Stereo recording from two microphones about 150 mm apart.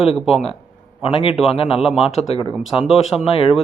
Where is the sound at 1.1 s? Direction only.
40° left (ahead or behind).